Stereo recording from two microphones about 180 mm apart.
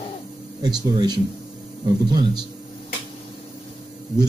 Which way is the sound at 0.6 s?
25° right (ahead or behind).